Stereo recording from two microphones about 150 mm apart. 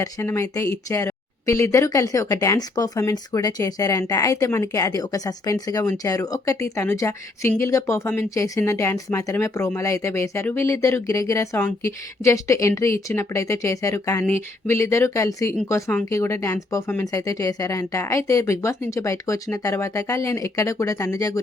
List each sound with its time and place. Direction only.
0.0 s speech: 15° left (ahead or behind)